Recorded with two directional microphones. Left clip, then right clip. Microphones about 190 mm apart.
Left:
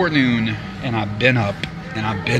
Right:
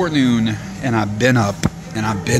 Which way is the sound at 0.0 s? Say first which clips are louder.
Even; 25° right (ahead or behind).